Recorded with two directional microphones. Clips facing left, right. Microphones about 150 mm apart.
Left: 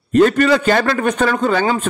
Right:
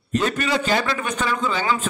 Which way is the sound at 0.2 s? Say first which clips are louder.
Left 13 dB; 50° left (ahead or behind).